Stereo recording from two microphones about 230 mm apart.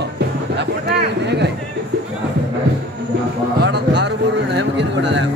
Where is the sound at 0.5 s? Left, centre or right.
Right.